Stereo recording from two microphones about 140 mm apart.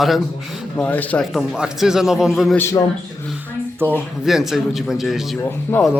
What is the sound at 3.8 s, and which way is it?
Speech, 15° right (ahead or behind).